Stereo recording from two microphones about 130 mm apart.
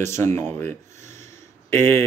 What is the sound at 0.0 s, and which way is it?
Speech, 20° left (ahead or behind).